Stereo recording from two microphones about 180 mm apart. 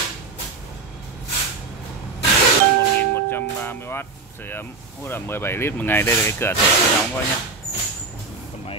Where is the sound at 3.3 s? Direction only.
10° left (ahead or behind).